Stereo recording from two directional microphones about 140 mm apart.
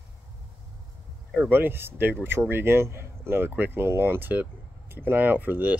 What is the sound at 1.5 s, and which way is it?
Speech, 15° right (ahead or behind).